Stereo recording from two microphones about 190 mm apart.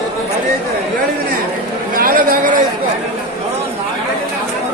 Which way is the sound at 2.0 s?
50° right (ahead or behind).